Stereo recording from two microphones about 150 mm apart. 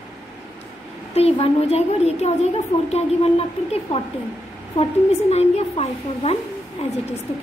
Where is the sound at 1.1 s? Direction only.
40° left (ahead or behind).